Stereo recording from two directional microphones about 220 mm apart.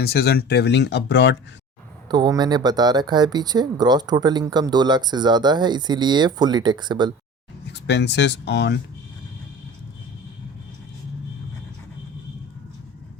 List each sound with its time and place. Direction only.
0.0 s speech: 45° left (ahead or behind)
2.0 s speech: 20° right (ahead or behind)
7.7 s speech: 50° left (ahead or behind)